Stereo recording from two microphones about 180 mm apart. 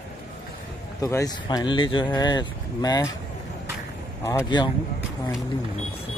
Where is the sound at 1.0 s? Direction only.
20° left (ahead or behind).